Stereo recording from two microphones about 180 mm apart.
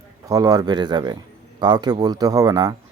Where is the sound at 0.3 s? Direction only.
20° right (ahead or behind).